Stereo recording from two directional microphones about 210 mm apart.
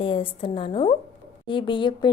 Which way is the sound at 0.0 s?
25° left (ahead or behind).